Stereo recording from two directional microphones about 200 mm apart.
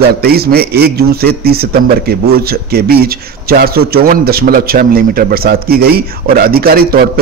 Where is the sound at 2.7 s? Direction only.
50° right (ahead or behind).